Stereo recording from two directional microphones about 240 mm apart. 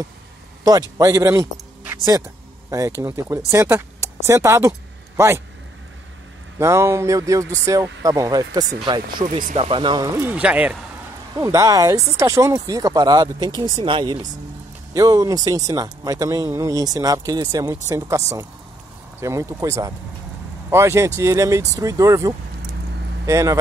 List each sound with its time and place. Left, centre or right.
0.9 s speech: centre
3.0 s speech: centre
6.6 s speech: centre
9.2 s speech: right; by 23.6 s centre